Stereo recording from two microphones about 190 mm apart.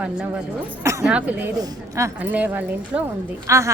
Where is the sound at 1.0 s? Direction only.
5° right (ahead or behind).